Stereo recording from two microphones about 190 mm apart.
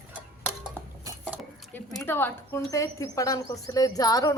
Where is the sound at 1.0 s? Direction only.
15° right (ahead or behind).